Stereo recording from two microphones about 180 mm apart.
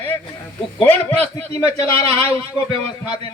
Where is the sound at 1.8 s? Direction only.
30° right (ahead or behind).